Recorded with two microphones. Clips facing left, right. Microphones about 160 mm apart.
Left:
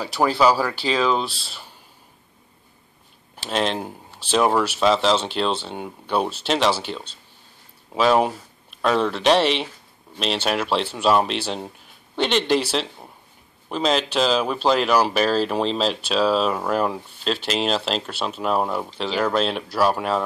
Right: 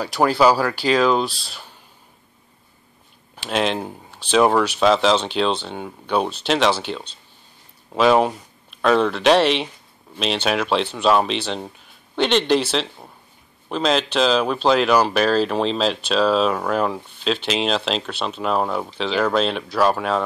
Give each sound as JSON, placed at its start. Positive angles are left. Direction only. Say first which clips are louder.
{"t": 0.2, "sound": "speech", "louder": "right 2 dB", "side_deg": 0}
{"t": 3.3, "sound": "speech", "louder": "right 2 dB", "side_deg": 0}